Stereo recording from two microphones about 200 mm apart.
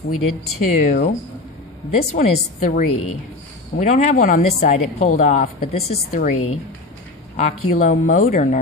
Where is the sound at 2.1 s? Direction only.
40° left (ahead or behind).